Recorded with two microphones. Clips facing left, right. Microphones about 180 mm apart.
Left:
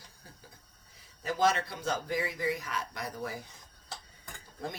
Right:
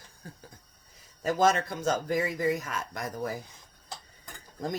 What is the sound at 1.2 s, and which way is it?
Speech, 45° right (ahead or behind).